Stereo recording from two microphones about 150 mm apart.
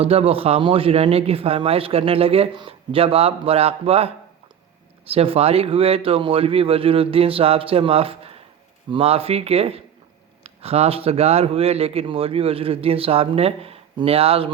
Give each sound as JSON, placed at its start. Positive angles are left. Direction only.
{"t": 0.0, "sound": "a man's voice", "side_deg": -40}